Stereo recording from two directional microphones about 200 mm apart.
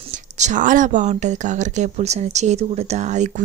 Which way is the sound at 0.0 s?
35° right (ahead or behind).